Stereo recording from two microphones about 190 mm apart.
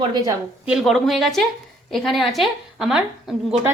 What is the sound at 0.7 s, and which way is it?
A woman's voice, centre (ahead or behind).